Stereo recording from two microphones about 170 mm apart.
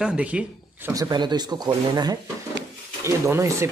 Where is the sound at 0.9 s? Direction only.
25° right (ahead or behind).